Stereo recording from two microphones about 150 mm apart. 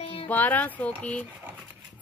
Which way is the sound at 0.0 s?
40° left (ahead or behind).